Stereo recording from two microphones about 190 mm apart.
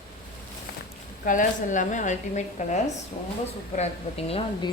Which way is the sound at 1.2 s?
45° left (ahead or behind).